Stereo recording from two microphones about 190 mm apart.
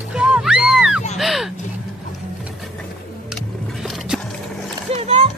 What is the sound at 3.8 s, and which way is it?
Boat, centre (ahead or behind).